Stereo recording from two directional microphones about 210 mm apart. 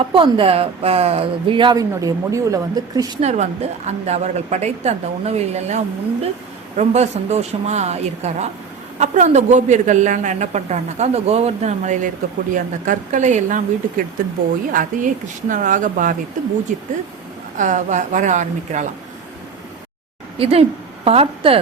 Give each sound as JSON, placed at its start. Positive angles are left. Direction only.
{"t": 0.0, "sound": "speech", "side_deg": -25}
{"t": 3.2, "sound": "a man's voice", "side_deg": -35}
{"t": 20.4, "sound": "a woman's voice", "side_deg": -30}